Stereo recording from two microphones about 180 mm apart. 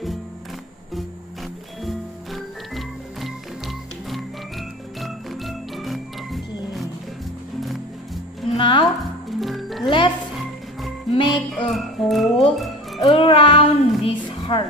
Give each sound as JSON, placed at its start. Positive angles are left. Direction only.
{"t": 1.9, "sound": "music", "side_deg": 0}
{"t": 8.5, "sound": "music", "side_deg": 30}
{"t": 9.4, "sound": "music", "side_deg": 0}
{"t": 9.8, "sound": "music", "side_deg": 25}
{"t": 11.2, "sound": "music", "side_deg": 0}
{"t": 13.0, "sound": "music", "side_deg": 30}